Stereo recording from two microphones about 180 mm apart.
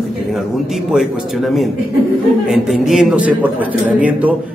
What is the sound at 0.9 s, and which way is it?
A man's voice, centre (ahead or behind).